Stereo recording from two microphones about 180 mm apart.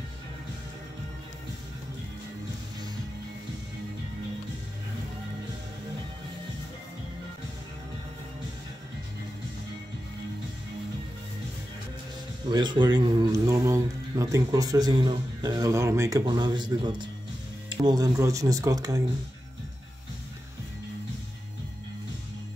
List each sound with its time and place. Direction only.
12.4 s speech: 25° right (ahead or behind)